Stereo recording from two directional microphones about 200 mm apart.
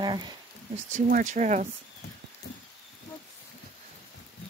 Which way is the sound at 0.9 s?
40° right (ahead or behind).